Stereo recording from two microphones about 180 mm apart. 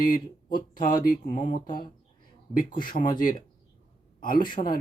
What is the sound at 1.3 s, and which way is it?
Speech, 45° left (ahead or behind).